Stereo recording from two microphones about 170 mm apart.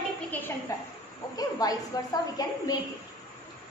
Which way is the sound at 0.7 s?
20° left (ahead or behind).